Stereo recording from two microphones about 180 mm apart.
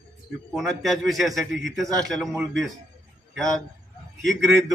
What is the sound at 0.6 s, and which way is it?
A man's voice, centre (ahead or behind).